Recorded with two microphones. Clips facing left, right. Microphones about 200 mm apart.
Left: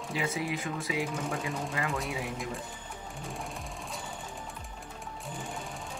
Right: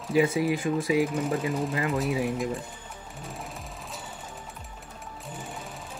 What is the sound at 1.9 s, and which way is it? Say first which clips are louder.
Speech: right 8 dB; centre (ahead or behind).